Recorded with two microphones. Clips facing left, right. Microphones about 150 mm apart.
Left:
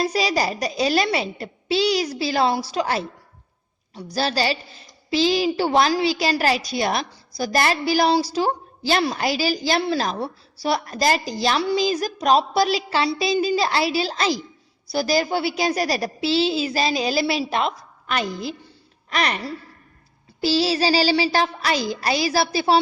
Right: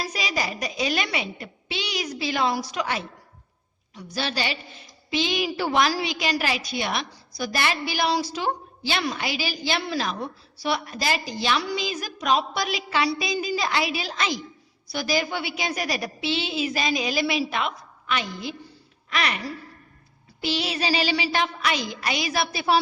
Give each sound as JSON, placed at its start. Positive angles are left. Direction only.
{"t": 0.0, "sound": "a woman's voice", "side_deg": 35}